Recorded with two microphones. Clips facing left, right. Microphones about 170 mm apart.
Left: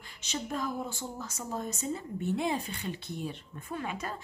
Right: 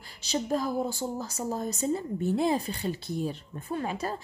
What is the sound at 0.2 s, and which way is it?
A woman's voice, 35° right (ahead or behind).